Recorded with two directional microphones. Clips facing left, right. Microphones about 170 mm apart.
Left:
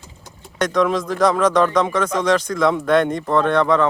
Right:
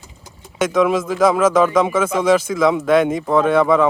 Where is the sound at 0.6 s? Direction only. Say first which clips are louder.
Right 2 dB; 5° right (ahead or behind).